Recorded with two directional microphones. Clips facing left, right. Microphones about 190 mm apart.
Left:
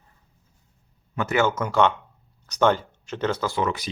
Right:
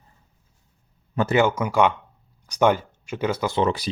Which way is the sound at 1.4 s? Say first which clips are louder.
Right 1 dB; 10° right (ahead or behind).